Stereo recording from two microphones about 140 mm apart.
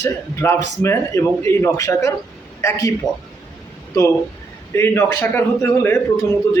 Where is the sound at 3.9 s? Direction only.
25° left (ahead or behind).